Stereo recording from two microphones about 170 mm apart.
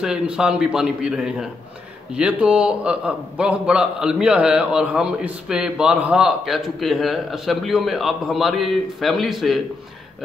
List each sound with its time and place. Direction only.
0.0 s a man's voice: 5° right (ahead or behind)